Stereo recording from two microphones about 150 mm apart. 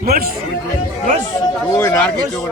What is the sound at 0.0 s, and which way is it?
Speech, 90° right.